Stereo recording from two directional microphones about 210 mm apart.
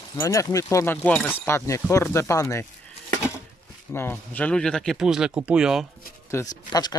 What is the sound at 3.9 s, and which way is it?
Speech, 10° left (ahead or behind).